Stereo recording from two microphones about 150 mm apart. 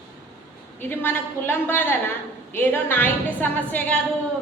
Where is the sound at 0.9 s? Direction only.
15° left (ahead or behind).